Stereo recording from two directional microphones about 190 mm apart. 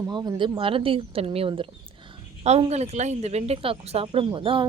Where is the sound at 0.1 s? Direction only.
20° right (ahead or behind).